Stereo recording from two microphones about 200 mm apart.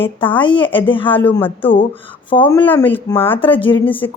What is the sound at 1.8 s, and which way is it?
Speech, 25° left (ahead or behind).